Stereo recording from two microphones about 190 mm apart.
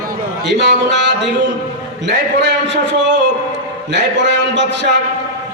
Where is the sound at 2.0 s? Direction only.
65° right (ahead or behind).